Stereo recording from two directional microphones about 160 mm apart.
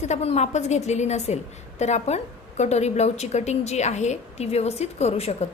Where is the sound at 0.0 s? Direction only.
45° left (ahead or behind).